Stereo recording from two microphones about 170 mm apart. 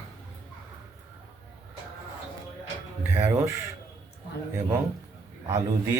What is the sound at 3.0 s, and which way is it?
Speech, 10° right (ahead or behind).